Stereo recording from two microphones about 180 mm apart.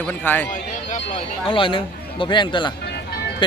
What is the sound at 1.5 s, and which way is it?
Speech, 30° left (ahead or behind).